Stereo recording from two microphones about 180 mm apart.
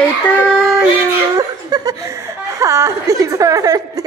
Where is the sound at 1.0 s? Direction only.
15° right (ahead or behind).